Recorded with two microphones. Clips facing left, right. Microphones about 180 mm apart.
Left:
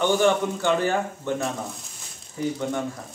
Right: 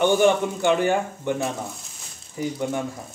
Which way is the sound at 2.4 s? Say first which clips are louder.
Left 1 dB; 10° right (ahead or behind).